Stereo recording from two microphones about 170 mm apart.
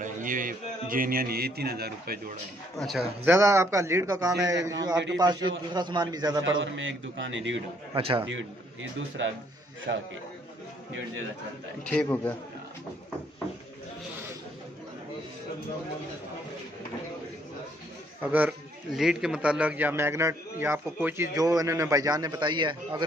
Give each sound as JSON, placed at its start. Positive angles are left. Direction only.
{"t": 0.0, "sound": "a man's voice", "side_deg": -50}
{"t": 2.8, "sound": "speech", "side_deg": 0}
{"t": 3.3, "sound": "a man's voice", "side_deg": -15}
{"t": 6.6, "sound": "a man's voice", "side_deg": -90}
{"t": 7.9, "sound": "a man's voice", "side_deg": -30}
{"t": 9.9, "sound": "a man's voice", "side_deg": -75}
{"t": 11.8, "sound": "a man's voice", "side_deg": 5}
{"t": 18.2, "sound": "a man's voice", "side_deg": -10}